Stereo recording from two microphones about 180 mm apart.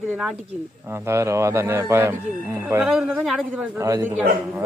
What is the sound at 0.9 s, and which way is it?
Speech, 15° right (ahead or behind).